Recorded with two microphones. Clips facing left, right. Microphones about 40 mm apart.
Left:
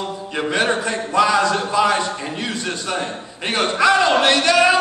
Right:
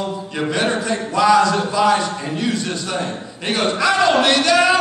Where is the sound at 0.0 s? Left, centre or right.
Left.